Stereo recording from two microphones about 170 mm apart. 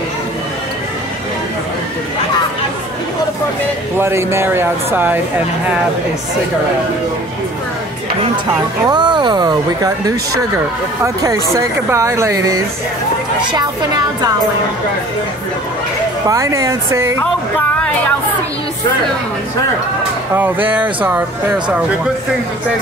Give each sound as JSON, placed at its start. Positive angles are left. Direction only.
{"t": 4.0, "sound": "speech", "side_deg": -15}
{"t": 8.8, "sound": "speech", "side_deg": -25}
{"t": 16.3, "sound": "speech", "side_deg": -20}
{"t": 20.6, "sound": "speech", "side_deg": -10}